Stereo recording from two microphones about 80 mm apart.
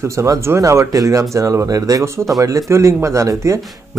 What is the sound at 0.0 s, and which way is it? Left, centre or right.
Speech, right.